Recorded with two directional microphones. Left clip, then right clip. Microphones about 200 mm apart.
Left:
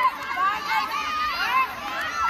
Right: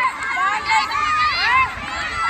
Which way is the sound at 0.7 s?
35° left (ahead or behind).